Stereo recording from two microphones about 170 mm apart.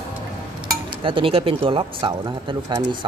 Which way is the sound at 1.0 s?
30° right (ahead or behind).